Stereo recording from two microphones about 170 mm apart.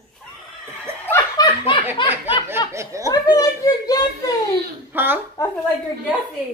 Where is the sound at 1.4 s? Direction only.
30° left (ahead or behind).